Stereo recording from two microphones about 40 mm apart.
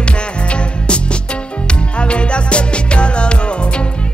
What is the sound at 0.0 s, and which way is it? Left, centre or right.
Music, left.